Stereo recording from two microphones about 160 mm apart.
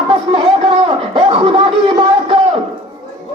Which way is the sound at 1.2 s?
35° right (ahead or behind).